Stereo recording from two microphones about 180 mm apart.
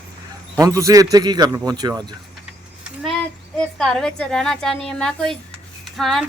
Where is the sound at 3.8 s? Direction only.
5° left (ahead or behind).